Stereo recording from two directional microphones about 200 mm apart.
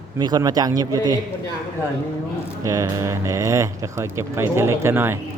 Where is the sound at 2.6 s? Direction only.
15° right (ahead or behind).